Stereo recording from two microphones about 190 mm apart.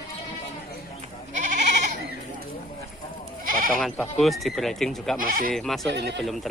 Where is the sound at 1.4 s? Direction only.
40° right (ahead or behind).